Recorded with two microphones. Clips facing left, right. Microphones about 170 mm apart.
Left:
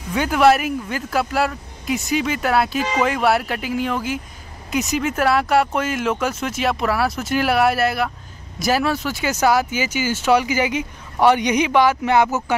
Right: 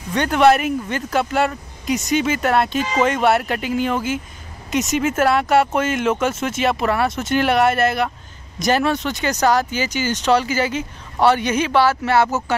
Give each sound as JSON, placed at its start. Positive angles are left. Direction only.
{"t": 0.1, "sound": "speech", "side_deg": 5}